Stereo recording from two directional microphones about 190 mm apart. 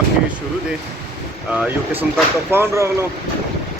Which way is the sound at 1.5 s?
5° right (ahead or behind).